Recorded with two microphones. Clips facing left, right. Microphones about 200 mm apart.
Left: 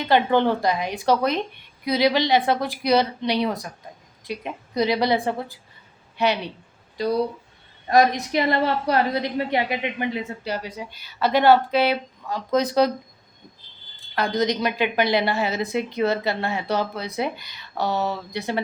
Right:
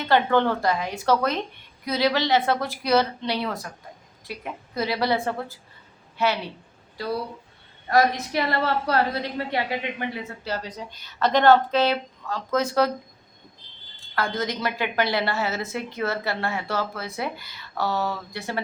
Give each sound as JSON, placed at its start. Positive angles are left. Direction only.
{"t": 0.0, "sound": "a woman's voice", "side_deg": 15}
{"t": 14.2, "sound": "a woman's voice", "side_deg": 20}